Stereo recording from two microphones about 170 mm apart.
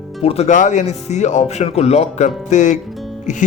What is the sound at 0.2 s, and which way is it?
Speech, 35° left (ahead or behind).